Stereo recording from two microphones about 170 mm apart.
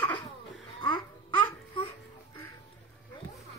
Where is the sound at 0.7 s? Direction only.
30° left (ahead or behind).